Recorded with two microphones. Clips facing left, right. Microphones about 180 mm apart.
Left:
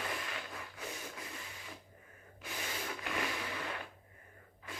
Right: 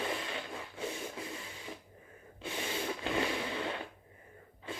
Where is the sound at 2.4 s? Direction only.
25° right (ahead or behind).